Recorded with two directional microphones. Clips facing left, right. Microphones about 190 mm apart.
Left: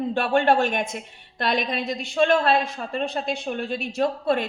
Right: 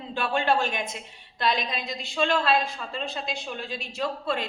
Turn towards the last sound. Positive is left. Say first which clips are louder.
# left 6 dB
turn(degrees=55)  # may be behind; listen again after turning